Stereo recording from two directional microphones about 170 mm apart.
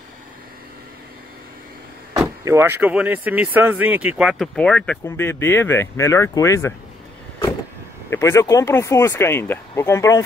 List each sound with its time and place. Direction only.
2.4 s speech: 15° right (ahead or behind); by 6.7 s 15° left (ahead or behind)
8.1 s speech: 15° left (ahead or behind)